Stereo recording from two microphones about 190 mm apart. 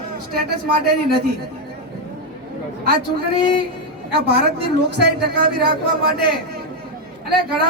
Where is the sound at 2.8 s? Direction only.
55° right (ahead or behind).